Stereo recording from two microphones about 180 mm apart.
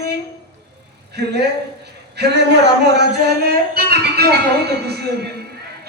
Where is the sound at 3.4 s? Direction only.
60° right (ahead or behind).